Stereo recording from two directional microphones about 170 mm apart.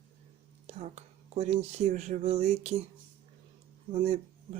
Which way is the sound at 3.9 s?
35° right (ahead or behind).